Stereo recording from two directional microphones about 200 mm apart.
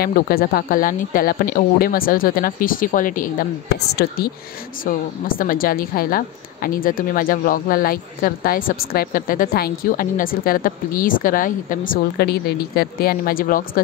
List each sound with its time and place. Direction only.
0.0 s a woman's voice: 50° left (ahead or behind)